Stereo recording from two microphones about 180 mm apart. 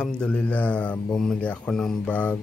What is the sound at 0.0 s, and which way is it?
Speech, 5° left (ahead or behind).